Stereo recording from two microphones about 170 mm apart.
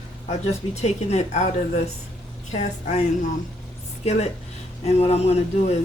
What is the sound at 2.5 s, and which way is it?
Speech, 45° left (ahead or behind).